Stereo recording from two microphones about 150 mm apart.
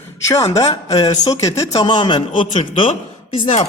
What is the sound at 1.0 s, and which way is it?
A man's voice, 25° left (ahead or behind).